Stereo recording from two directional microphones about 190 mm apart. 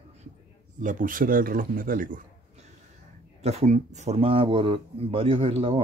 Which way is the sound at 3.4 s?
35° right (ahead or behind).